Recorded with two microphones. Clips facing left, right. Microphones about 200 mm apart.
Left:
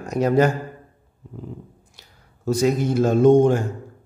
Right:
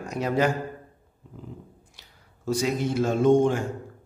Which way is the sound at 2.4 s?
45° left (ahead or behind).